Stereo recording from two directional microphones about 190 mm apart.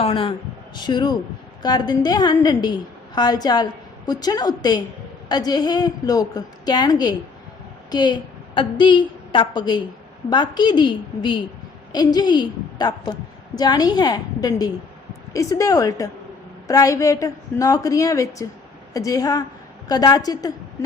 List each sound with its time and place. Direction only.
0.0 s a woman's voice: 30° left (ahead or behind)